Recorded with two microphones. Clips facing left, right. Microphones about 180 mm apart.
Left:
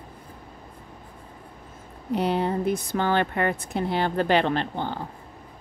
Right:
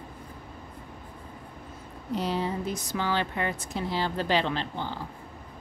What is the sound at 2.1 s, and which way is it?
Speech, 60° left (ahead or behind).